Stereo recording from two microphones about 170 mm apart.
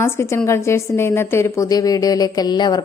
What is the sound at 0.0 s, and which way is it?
A woman's voice, 15° left (ahead or behind).